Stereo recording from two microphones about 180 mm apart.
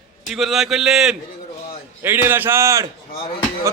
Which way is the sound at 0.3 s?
Centre (ahead or behind).